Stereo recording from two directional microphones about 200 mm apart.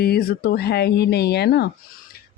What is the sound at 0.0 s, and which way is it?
Speech, 50° left (ahead or behind).